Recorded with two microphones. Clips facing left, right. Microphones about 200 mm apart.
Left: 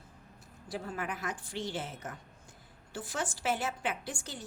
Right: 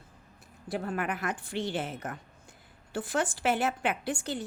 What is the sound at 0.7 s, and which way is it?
A woman's voice, 60° right (ahead or behind).